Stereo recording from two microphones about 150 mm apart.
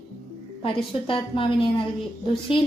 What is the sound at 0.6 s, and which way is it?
Speech, 35° left (ahead or behind).